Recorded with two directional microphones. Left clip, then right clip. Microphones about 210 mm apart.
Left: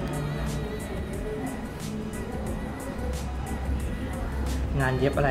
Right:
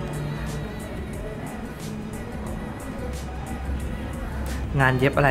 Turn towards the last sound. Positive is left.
turn(degrees=-25)  # may be behind; listen again after turning